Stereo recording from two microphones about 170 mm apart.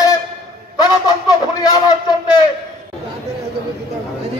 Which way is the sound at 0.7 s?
25° left (ahead or behind).